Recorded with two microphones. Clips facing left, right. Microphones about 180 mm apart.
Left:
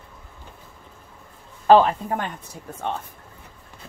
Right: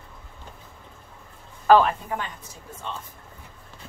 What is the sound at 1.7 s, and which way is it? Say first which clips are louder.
Speech: left 2 dB; 25° left (ahead or behind).